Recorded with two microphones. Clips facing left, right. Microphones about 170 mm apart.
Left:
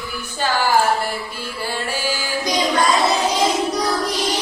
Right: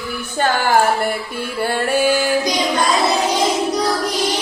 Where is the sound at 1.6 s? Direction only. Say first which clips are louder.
Right 8 dB; 60° right (ahead or behind).